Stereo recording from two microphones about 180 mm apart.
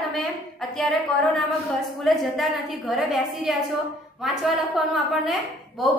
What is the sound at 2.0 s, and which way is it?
A woman's voice, centre (ahead or behind).